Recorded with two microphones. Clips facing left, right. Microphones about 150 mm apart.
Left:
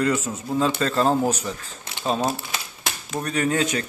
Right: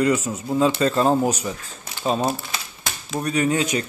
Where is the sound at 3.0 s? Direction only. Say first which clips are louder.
Right 3 dB; 10° right (ahead or behind).